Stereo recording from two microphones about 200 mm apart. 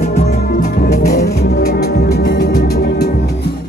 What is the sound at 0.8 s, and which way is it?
Music, 50° left (ahead or behind).